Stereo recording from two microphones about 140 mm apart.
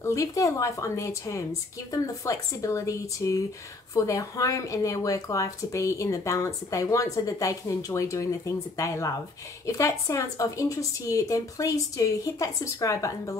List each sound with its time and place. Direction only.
0.0 s speech: 20° left (ahead or behind)